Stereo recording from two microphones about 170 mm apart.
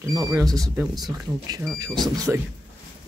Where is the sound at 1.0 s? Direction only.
20° right (ahead or behind).